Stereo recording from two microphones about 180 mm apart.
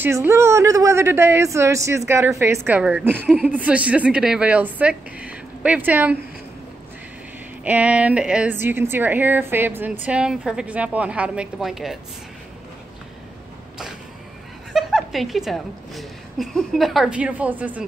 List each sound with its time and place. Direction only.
0.0 s a woman's voice: 15° right (ahead or behind)
7.6 s a woman's voice: 10° right (ahead or behind)
14.7 s a woman's voice: centre (ahead or behind)